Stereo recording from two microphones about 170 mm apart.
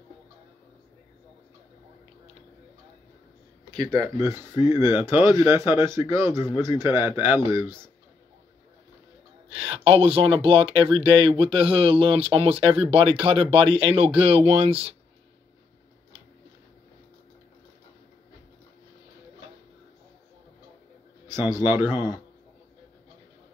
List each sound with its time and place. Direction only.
3.9 s speech: 15° right (ahead or behind)
9.5 s speech: 35° right (ahead or behind)
21.6 s speech: 15° right (ahead or behind)